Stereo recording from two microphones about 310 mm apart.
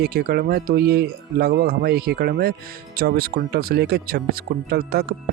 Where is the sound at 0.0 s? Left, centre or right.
Right.